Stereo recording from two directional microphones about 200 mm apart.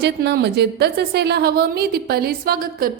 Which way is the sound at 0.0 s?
55° right (ahead or behind).